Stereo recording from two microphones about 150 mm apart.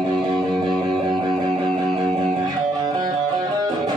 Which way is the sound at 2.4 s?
25° right (ahead or behind).